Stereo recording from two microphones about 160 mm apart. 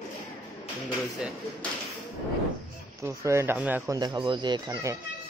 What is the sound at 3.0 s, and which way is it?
Speech, 20° right (ahead or behind).